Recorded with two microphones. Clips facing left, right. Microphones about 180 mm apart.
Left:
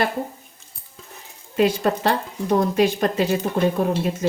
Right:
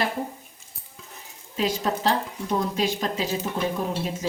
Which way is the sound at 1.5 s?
60° left (ahead or behind).